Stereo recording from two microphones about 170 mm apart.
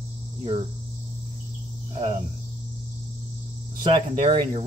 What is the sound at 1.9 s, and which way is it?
Cricket, 35° right (ahead or behind).